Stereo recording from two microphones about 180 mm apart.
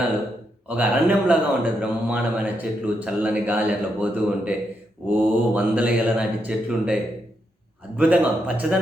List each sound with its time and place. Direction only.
0.7 s a man's voice: 10° right (ahead or behind)